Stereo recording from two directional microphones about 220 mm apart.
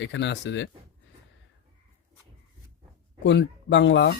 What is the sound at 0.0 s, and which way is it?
Speech, 55° left (ahead or behind).